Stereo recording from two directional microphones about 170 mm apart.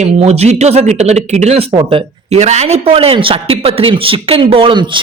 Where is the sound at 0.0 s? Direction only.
40° right (ahead or behind).